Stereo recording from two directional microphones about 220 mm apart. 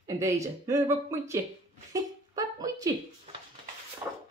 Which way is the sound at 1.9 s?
15° right (ahead or behind).